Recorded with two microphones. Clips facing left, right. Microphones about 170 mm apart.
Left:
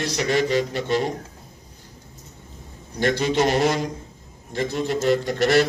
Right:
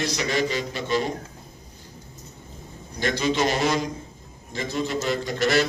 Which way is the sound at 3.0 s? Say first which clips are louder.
Left 3 dB; 60° left (ahead or behind).